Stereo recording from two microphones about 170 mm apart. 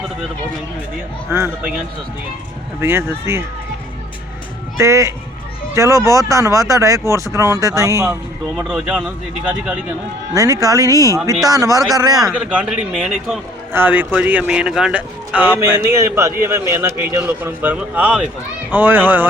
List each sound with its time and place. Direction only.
1.3 s a man's voice: 15° right (ahead or behind)
2.8 s a man's voice: 15° right (ahead or behind)
4.8 s a man's voice: 15° right (ahead or behind)
8.5 s a man's voice: 5° right (ahead or behind)
10.3 s speech: 20° right (ahead or behind)
12.3 s a man's voice: 10° right (ahead or behind)